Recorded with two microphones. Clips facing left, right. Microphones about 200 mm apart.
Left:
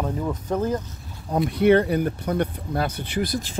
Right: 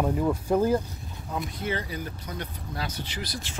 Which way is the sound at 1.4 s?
65° left (ahead or behind).